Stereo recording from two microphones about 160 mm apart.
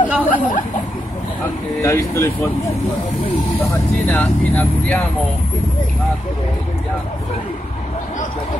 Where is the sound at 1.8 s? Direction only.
15° left (ahead or behind).